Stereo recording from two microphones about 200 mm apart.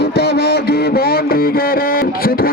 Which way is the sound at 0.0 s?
55° left (ahead or behind).